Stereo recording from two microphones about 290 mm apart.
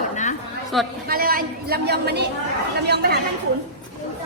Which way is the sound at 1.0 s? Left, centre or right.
Right.